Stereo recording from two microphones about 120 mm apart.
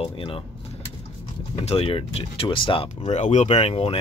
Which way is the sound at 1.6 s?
50° left (ahead or behind).